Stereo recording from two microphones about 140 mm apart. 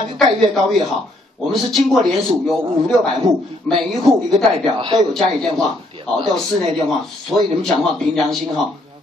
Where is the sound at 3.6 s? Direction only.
Centre (ahead or behind).